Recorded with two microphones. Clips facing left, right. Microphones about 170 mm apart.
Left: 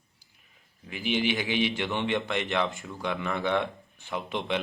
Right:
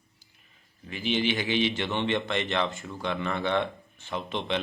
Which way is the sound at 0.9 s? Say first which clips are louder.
Even; 10° left (ahead or behind).